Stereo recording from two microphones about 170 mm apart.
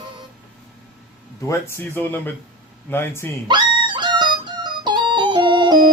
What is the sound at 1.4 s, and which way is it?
Speech, 15° left (ahead or behind).